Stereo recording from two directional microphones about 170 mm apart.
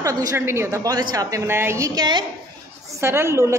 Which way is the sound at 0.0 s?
20° right (ahead or behind).